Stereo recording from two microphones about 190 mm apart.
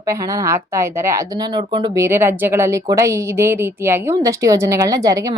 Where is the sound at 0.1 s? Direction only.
15° right (ahead or behind).